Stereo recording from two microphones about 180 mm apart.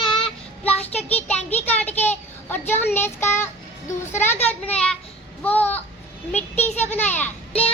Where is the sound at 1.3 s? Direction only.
5° left (ahead or behind).